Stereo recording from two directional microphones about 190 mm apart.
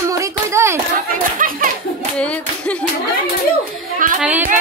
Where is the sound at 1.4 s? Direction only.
45° right (ahead or behind).